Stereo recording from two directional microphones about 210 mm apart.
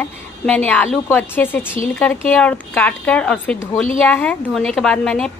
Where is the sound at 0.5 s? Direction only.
5° left (ahead or behind).